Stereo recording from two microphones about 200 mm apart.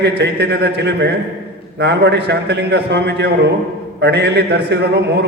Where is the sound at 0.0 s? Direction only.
55° right (ahead or behind).